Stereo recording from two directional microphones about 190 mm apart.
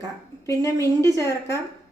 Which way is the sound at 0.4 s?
15° left (ahead or behind).